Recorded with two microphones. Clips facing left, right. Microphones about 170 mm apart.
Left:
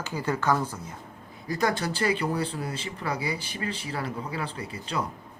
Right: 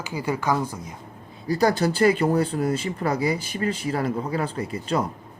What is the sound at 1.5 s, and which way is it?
Speech, 35° right (ahead or behind).